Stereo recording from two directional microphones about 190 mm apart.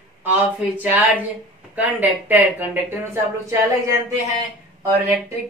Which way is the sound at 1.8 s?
10° right (ahead or behind).